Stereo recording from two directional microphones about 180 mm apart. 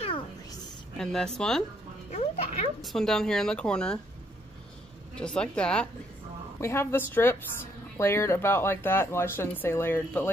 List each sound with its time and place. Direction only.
0.9 s speech: 5° left (ahead or behind)
2.0 s speech: 35° left (ahead or behind)
2.8 s speech: centre (ahead or behind)
5.1 s speech: 5° left (ahead or behind)